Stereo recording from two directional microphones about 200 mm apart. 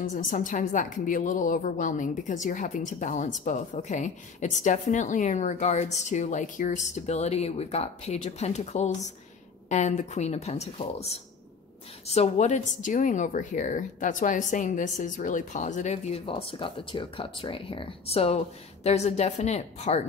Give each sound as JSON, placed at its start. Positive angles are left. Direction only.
{"t": 0.1, "sound": "a woman's voice", "side_deg": 40}
{"t": 12.1, "sound": "a woman's voice", "side_deg": 35}